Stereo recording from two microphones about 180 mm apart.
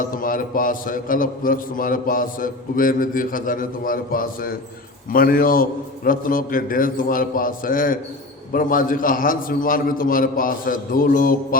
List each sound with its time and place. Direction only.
0.1 s a man's voice: 50° left (ahead or behind)